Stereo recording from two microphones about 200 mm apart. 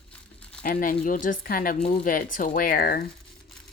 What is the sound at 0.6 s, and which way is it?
Speech, 45° left (ahead or behind).